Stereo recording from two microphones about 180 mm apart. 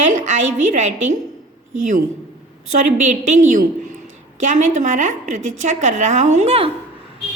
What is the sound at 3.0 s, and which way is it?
A woman's voice, 45° right (ahead or behind).